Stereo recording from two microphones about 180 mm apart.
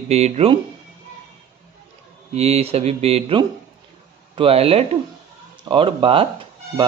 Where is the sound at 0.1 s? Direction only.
40° right (ahead or behind).